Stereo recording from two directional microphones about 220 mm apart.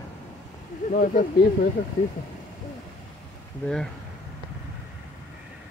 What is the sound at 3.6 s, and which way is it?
Speech, 5° left (ahead or behind).